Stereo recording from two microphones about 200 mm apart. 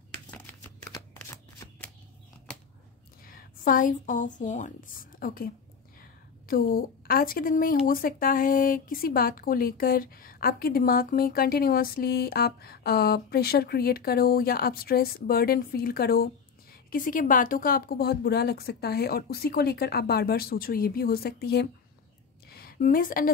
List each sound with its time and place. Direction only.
1.1 s shuffling cards: 10° left (ahead or behind)
3.3 s a woman's voice: 45° left (ahead or behind)